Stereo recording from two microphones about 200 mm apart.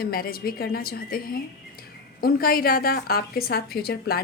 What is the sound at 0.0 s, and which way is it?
A woman's voice, 50° left (ahead or behind).